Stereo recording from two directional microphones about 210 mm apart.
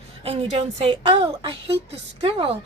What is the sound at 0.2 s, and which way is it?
A woman's voice, 25° right (ahead or behind).